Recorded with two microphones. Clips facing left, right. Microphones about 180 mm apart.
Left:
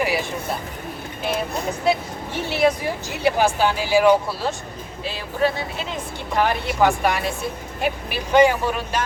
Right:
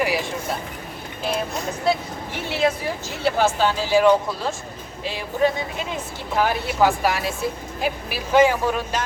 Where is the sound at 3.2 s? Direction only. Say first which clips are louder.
Left 1 dB; 15° left (ahead or behind).